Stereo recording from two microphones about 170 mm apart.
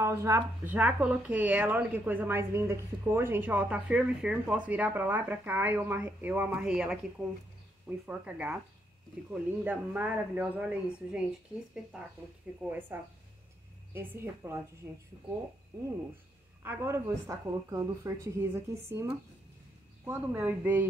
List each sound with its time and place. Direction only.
0.0 s speech: 15° right (ahead or behind)
16.6 s speech: 15° right (ahead or behind)